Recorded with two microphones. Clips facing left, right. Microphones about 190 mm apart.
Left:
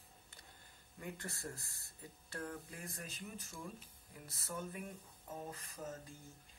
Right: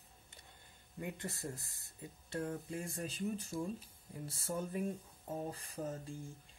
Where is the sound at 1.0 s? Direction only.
20° right (ahead or behind).